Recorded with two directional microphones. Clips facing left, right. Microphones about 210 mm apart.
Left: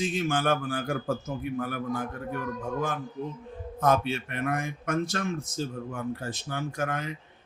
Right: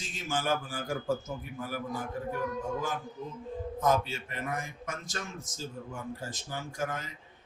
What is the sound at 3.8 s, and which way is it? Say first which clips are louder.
Speech: left 4 dB; 65° left (ahead or behind).